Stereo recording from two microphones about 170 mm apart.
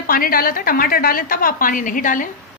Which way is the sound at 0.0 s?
60° left (ahead or behind).